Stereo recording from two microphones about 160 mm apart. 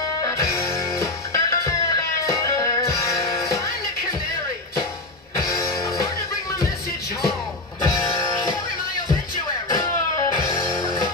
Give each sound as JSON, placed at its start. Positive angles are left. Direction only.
{"t": 0.2, "sound": "music", "side_deg": 20}
{"t": 5.3, "sound": "music", "side_deg": 15}
{"t": 7.8, "sound": "music", "side_deg": 25}